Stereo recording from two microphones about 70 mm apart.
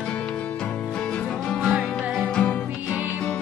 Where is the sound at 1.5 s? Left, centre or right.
Centre.